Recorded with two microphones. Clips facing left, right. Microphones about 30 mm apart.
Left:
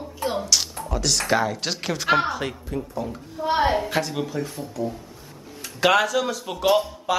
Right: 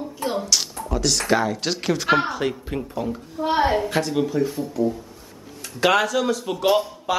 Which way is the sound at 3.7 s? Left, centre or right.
Centre.